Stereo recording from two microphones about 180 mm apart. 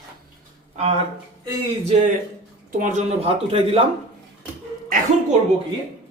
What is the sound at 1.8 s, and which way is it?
A man's voice, 40° right (ahead or behind).